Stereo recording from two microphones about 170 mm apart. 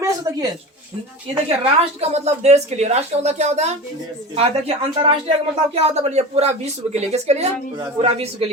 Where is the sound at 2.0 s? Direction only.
40° right (ahead or behind).